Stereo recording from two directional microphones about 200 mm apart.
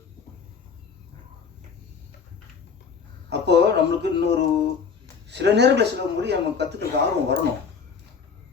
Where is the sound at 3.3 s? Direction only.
55° right (ahead or behind).